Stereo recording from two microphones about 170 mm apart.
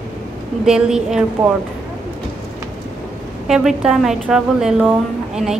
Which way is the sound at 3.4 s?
Centre (ahead or behind).